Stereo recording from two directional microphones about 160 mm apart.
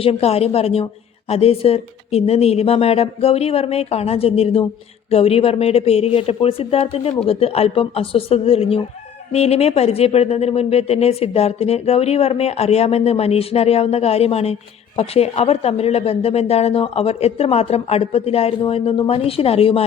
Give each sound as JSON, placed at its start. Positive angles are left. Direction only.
{"t": 0.0, "sound": "speech", "side_deg": 40}